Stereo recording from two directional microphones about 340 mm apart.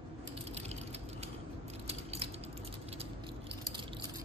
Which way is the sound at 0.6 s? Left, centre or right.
Centre.